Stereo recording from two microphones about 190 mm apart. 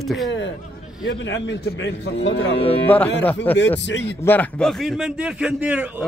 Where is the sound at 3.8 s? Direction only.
70° left (ahead or behind).